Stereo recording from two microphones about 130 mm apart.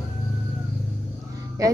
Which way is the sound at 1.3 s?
25° right (ahead or behind).